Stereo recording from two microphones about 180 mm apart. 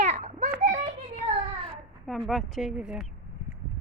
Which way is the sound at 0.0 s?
40° right (ahead or behind).